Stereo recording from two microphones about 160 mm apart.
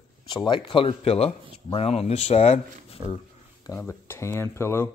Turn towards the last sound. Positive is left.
turn(degrees=15)  # may be behind; listen again after turning